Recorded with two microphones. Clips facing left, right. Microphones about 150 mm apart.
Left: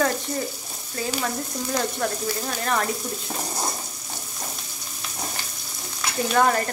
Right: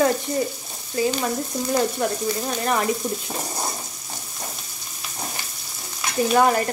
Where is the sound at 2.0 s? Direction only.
15° right (ahead or behind).